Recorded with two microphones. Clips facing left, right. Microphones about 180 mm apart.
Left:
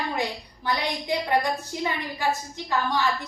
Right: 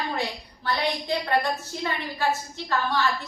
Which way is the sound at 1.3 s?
15° left (ahead or behind).